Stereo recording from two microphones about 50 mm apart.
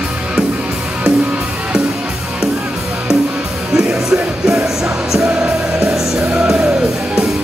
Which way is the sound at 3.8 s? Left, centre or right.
Centre.